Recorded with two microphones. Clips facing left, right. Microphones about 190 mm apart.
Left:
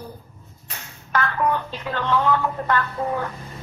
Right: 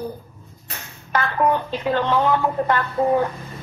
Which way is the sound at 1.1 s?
20° right (ahead or behind).